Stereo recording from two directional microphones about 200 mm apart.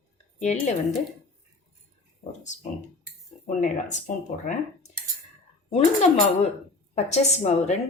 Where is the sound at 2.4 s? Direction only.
35° left (ahead or behind).